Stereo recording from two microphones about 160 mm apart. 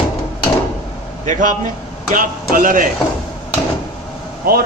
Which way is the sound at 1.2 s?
55° right (ahead or behind).